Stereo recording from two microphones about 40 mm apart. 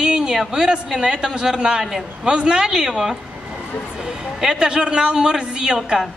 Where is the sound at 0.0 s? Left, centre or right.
Centre.